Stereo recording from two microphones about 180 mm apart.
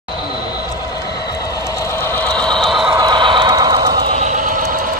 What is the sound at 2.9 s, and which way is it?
Neigh, 25° right (ahead or behind).